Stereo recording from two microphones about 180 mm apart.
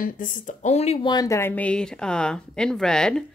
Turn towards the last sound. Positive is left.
turn(degrees=5)  # may be behind; listen again after turning